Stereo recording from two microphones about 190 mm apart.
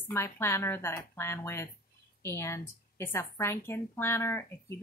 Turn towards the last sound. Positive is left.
turn(degrees=15)  # may be behind; listen again after turning